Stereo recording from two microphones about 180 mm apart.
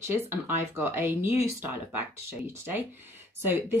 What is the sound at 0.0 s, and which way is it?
A woman's voice, 10° right (ahead or behind).